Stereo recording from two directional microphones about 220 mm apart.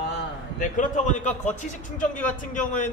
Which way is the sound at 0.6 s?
35° left (ahead or behind).